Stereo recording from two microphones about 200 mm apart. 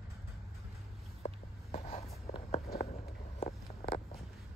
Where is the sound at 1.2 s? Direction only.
30° left (ahead or behind).